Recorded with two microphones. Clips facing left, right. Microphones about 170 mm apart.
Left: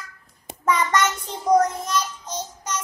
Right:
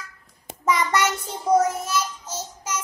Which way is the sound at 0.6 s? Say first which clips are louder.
Left 1 dB; 10° right (ahead or behind).